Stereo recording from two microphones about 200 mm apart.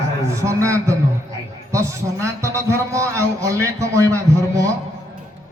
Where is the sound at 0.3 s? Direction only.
15° right (ahead or behind).